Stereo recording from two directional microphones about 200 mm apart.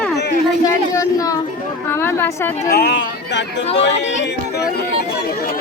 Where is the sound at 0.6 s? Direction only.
15° left (ahead or behind).